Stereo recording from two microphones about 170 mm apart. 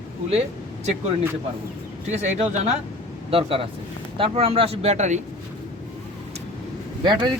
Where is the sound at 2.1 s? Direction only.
40° right (ahead or behind).